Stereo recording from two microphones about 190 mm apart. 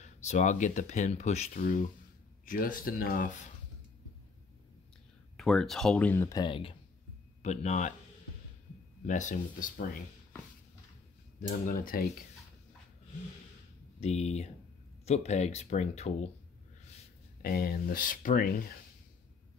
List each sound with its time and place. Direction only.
0.0 s speech: 40° left (ahead or behind)
5.4 s speech: centre (ahead or behind); by 6.7 s 25° left (ahead or behind)
7.4 s speech: 35° left (ahead or behind)
9.0 s speech: 40° left (ahead or behind)
11.4 s speech: 45° left (ahead or behind)
14.0 s speech: 35° left (ahead or behind)
17.4 s speech: 50° left (ahead or behind)